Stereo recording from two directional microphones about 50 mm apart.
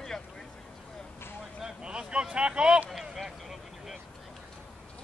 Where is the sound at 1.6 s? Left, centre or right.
Centre.